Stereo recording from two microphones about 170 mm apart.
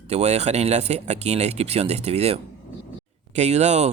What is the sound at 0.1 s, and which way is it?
Speech, 40° right (ahead or behind).